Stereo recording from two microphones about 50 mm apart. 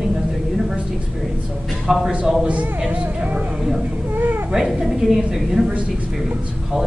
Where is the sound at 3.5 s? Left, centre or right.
Centre.